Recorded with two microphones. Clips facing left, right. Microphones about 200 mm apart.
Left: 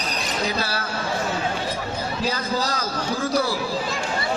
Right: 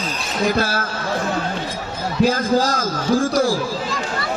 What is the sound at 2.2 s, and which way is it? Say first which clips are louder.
A man's voice: right 10 dB; 45° right (ahead or behind).